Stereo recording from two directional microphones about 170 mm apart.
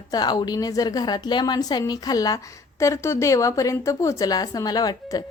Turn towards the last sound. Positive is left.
turn(degrees=20)  # may be behind; listen again after turning